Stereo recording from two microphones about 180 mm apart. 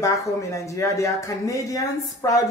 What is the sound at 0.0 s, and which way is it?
A woman's voice, 15° left (ahead or behind).